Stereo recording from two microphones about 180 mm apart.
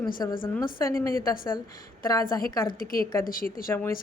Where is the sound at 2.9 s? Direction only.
50° left (ahead or behind).